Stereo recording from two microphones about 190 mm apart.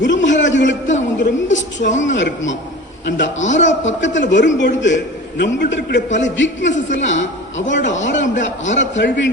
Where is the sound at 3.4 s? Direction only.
40° left (ahead or behind).